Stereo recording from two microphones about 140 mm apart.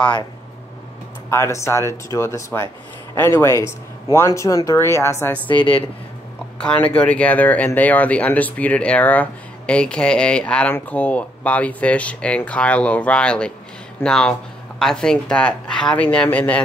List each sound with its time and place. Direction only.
1.3 s speech: 20° left (ahead or behind)
5.5 s speech: 35° left (ahead or behind)
6.6 s speech: 10° left (ahead or behind)